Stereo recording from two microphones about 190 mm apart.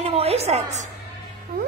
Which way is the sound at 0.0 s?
30° right (ahead or behind).